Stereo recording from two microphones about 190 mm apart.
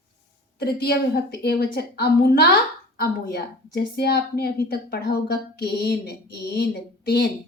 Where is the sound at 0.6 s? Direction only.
55° left (ahead or behind).